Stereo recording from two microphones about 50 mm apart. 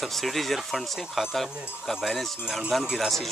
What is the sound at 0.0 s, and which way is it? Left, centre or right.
Speech, centre.